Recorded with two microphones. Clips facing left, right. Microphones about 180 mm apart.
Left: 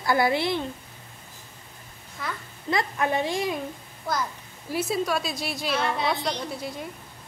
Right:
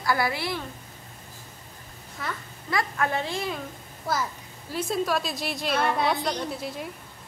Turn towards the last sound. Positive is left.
turn(degrees=0)  # may be behind; listen again after turning